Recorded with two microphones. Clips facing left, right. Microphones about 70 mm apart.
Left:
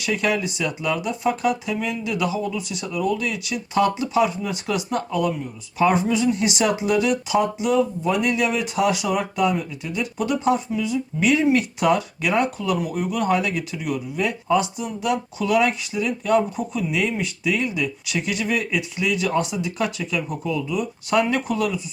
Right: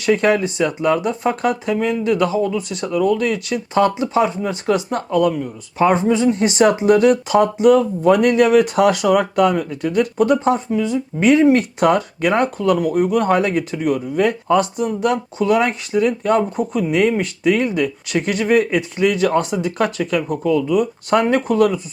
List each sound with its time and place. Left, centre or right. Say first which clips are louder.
0.0 s speech: right 7 dB; right